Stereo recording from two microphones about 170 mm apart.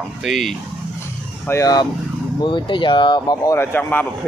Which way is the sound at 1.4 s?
20° left (ahead or behind).